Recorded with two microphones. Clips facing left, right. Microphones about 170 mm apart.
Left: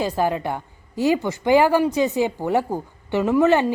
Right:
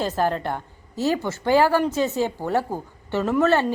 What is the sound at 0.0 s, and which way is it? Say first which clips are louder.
A woman's voice: left 1 dB; 10° left (ahead or behind).